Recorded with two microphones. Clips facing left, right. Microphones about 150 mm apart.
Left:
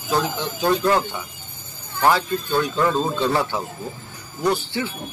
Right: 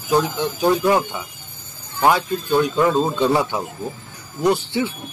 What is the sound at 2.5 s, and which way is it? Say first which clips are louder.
Speech: right 4 dB; 15° right (ahead or behind).